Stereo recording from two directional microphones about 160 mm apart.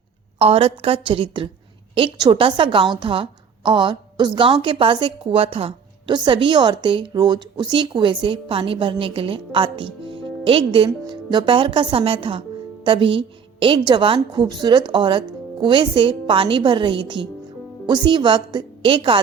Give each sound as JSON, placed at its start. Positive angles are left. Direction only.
{"t": 0.3, "sound": "a woman's voice", "side_deg": -35}